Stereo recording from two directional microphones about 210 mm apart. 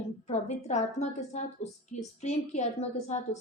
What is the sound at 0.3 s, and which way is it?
A woman's voice, 35° left (ahead or behind).